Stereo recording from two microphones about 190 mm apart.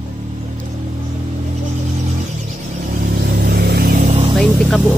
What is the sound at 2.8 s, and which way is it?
Vehicle, 55° right (ahead or behind).